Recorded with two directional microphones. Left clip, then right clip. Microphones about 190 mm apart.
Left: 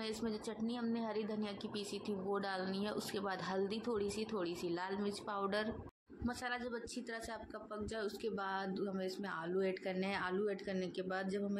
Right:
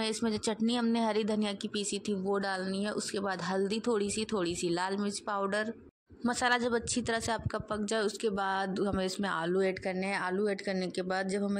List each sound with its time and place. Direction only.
0.0 s speech: 45° right (ahead or behind); by 5.7 s 25° right (ahead or behind)
6.2 s speech: 50° right (ahead or behind)